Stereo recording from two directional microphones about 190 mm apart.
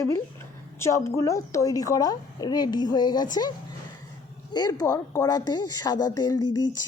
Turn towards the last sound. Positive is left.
turn(degrees=20)  # may be behind; listen again after turning